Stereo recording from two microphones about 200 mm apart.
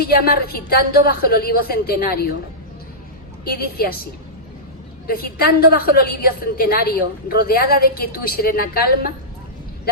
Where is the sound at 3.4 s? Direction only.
50° left (ahead or behind).